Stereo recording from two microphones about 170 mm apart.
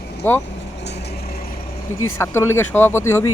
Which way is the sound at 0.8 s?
90° left.